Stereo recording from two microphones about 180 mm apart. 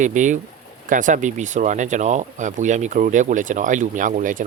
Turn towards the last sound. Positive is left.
turn(degrees=-50)  # may be behind; listen again after turning